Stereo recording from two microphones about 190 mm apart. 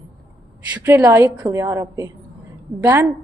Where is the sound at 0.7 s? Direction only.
10° right (ahead or behind).